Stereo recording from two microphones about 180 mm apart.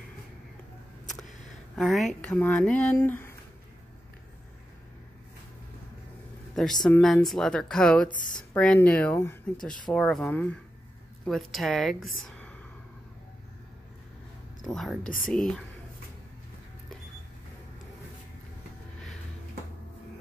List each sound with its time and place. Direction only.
1.8 s speech: centre (ahead or behind)
6.5 s speech: centre (ahead or behind)
14.6 s speech: centre (ahead or behind)